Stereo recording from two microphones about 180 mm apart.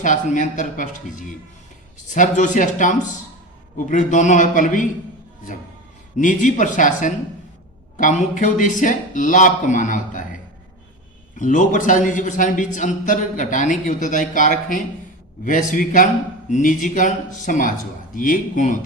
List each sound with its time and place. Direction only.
0.0 s a man's voice: 45° left (ahead or behind)
6.1 s a man's voice: 45° left (ahead or behind)
11.3 s a man's voice: 45° left (ahead or behind)